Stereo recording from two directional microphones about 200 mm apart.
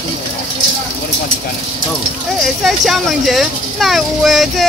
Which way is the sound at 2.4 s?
Centre (ahead or behind).